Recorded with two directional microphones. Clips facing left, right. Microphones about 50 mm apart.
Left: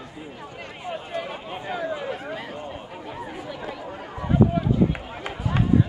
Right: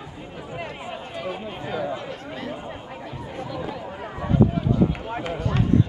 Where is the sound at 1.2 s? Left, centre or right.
Centre.